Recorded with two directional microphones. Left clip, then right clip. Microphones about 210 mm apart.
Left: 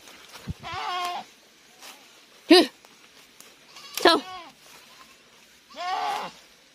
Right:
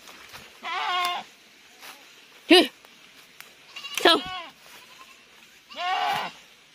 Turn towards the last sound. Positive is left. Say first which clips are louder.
# right 2 dB
turn(degrees=0)  # may be behind; listen again after turning